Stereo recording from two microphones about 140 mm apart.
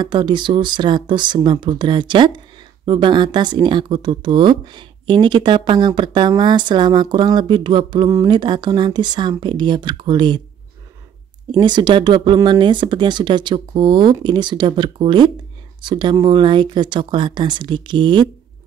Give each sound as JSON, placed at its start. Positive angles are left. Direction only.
{"t": 0.0, "sound": "speech", "side_deg": -35}
{"t": 11.5, "sound": "speech", "side_deg": -30}